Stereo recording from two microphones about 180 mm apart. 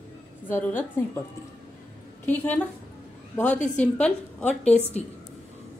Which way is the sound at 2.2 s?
10° left (ahead or behind).